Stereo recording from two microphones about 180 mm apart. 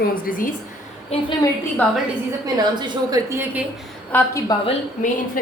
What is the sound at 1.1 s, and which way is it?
Speech, 35° left (ahead or behind).